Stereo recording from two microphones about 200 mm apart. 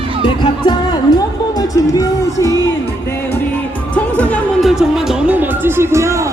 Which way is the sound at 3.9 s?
5° left (ahead or behind).